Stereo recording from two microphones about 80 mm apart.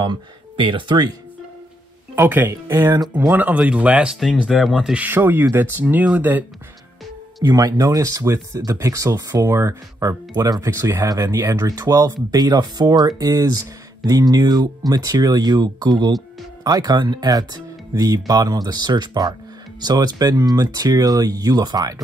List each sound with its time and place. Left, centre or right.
0.0 s speech: right
2.1 s speech: right
4.2 s speech: centre
4.9 s speech: right
7.4 s speech: right
10.7 s speech: right